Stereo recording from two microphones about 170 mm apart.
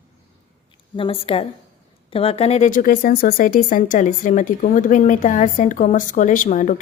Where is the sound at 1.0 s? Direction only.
35° left (ahead or behind).